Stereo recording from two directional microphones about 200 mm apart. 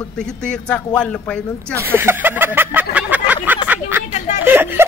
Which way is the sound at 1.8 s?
10° right (ahead or behind).